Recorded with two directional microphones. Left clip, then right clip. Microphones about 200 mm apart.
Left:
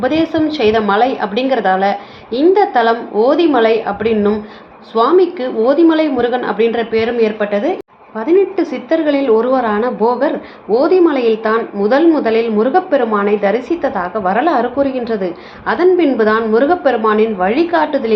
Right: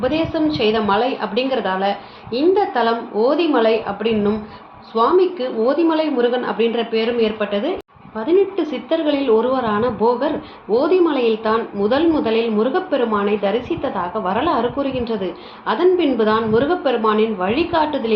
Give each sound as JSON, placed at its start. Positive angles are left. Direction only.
{"t": 0.0, "sound": "a woman's voice", "side_deg": 25}